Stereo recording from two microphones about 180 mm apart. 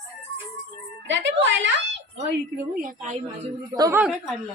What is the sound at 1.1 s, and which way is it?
Speech, 90° right.